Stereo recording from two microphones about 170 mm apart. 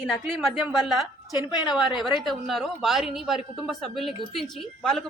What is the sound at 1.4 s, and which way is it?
Speech, 25° left (ahead or behind).